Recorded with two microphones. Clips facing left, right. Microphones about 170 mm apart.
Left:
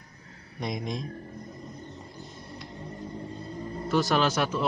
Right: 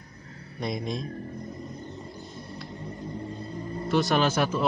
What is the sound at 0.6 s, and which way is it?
Speech, 15° left (ahead or behind).